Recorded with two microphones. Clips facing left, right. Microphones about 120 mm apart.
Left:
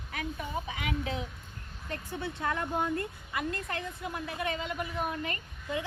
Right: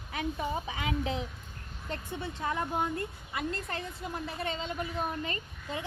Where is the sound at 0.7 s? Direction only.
30° right (ahead or behind).